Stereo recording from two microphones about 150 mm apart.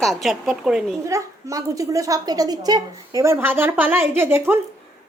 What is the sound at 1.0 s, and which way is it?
A woman's voice, 20° right (ahead or behind).